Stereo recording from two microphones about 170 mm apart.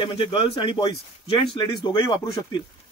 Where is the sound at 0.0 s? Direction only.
30° left (ahead or behind).